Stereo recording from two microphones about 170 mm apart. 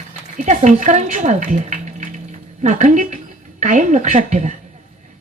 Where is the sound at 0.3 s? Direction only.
45° right (ahead or behind).